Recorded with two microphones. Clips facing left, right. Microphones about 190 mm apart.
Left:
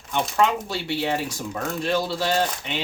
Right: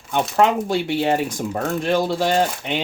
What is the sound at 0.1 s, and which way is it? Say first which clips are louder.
Speech: right 4 dB; 50° right (ahead or behind).